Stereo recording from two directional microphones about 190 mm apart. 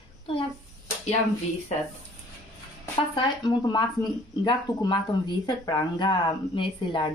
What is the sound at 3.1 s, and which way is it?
Speech, 20° left (ahead or behind).